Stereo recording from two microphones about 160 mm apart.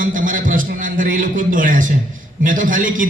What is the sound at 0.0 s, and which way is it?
A man's voice, 55° right (ahead or behind).